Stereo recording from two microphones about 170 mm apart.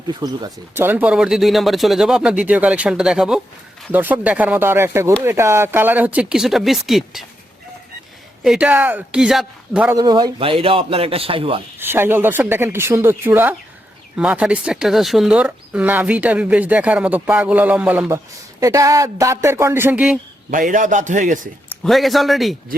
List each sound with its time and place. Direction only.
0.1 s speech: 25° right (ahead or behind)
0.9 s speech: 10° right (ahead or behind)
8.4 s speech: 5° right (ahead or behind)
9.9 s a man's voice: 25° right (ahead or behind)
11.8 s speech: 10° right (ahead or behind)
20.5 s a man's voice: 50° right (ahead or behind)
21.7 s speech: centre (ahead or behind)